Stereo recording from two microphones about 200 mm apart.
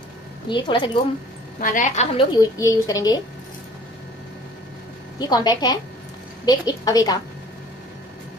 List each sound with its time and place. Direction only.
0.5 s a woman's voice: 25° left (ahead or behind)
1.6 s a woman's voice: 40° left (ahead or behind)
2.3 s a child's voice: 20° left (ahead or behind)
5.2 s a woman's voice: 20° left (ahead or behind)